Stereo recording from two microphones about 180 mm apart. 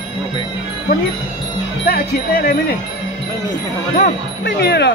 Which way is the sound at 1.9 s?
60° left (ahead or behind).